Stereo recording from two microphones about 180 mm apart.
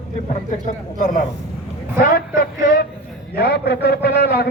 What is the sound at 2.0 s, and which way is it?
A man's voice, 55° left (ahead or behind).